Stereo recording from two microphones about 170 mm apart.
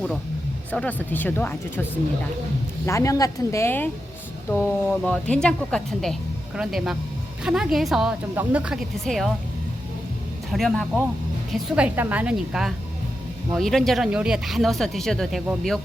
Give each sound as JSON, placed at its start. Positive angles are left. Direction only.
{"t": 0.7, "sound": "speech", "side_deg": 10}
{"t": 10.5, "sound": "a woman's voice", "side_deg": 0}